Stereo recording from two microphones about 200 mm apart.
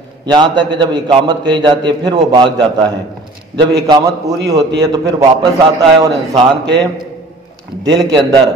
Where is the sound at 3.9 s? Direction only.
20° right (ahead or behind).